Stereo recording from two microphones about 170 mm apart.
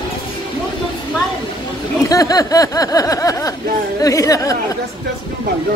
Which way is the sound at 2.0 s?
20° left (ahead or behind).